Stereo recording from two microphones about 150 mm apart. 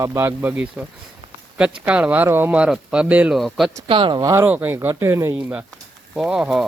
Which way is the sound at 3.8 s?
35° right (ahead or behind).